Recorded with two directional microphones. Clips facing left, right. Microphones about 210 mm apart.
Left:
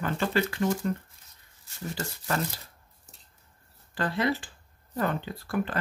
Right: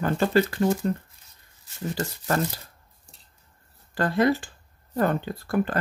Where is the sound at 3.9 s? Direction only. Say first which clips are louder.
Right 6 dB; 45° right (ahead or behind).